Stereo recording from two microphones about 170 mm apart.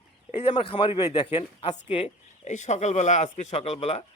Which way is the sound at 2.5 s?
45° left (ahead or behind).